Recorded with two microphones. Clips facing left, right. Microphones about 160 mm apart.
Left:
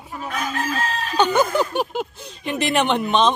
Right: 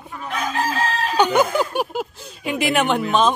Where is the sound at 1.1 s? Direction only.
10° right (ahead or behind).